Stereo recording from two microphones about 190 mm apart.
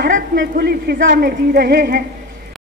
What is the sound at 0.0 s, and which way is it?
A woman's voice, 60° right (ahead or behind).